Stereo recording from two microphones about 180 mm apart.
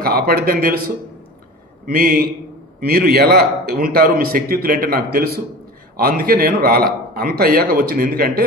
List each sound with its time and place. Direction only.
0.0 s a man's voice: 60° right (ahead or behind)